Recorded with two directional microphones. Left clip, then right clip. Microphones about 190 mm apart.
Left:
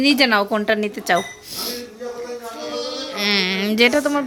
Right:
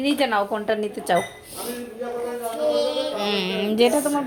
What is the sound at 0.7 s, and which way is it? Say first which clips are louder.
Speech: left 3 dB; 20° left (ahead or behind).